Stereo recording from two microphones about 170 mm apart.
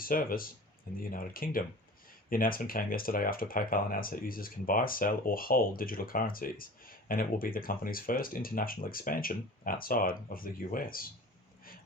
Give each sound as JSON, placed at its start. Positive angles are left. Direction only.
{"t": 0.0, "sound": "speech", "side_deg": 60}